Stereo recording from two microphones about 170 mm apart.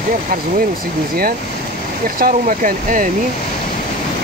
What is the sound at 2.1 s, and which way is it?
Speech, 55° right (ahead or behind).